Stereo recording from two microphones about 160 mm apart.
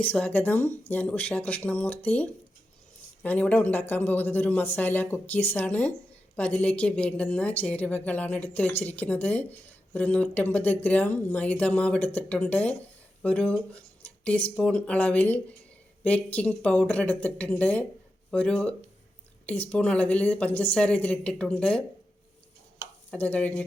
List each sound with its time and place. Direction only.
0.0 s speech: 10° left (ahead or behind)
23.1 s speech: 10° left (ahead or behind)